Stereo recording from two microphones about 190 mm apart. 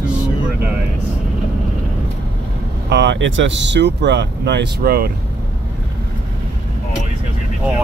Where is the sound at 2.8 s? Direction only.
65° right (ahead or behind).